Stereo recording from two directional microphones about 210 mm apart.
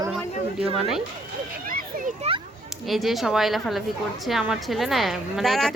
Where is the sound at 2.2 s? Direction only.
30° right (ahead or behind).